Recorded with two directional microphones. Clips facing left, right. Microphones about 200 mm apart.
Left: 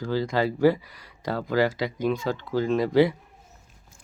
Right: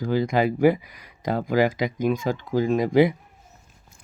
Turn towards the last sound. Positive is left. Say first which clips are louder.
# right 2 dB
turn(degrees=-15)  # may be behind; listen again after turning